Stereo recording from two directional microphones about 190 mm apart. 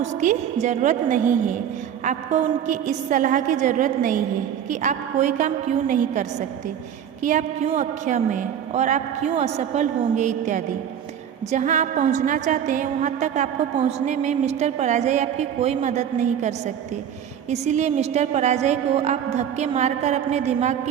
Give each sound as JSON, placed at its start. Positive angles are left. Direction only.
{"t": 0.0, "sound": "a woman's voice", "side_deg": -40}
{"t": 7.3, "sound": "a woman's voice", "side_deg": -40}